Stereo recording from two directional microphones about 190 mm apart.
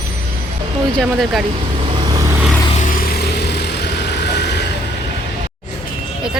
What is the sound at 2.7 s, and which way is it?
Vehicle, 40° left (ahead or behind).